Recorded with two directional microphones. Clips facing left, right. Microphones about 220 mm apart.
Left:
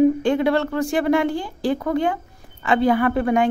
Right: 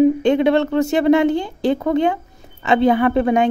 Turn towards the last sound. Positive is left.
turn(degrees=-25)  # may be behind; listen again after turning